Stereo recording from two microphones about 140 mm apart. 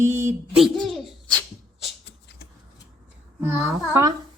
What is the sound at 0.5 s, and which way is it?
Speech, centre (ahead or behind).